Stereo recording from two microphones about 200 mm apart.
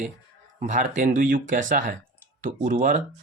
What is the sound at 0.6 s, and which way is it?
Speech, 40° right (ahead or behind).